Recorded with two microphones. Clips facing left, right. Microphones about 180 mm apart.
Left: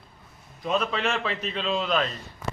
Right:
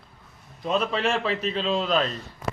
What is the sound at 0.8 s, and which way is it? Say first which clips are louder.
Speech: right 2 dB; 30° right (ahead or behind).